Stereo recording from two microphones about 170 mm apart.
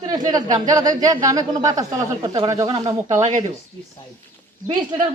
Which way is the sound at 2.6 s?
35° right (ahead or behind).